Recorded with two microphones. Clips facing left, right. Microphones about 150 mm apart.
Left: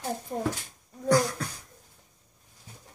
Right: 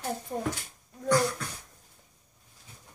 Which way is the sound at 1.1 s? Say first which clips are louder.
Left 2 dB; 35° left (ahead or behind).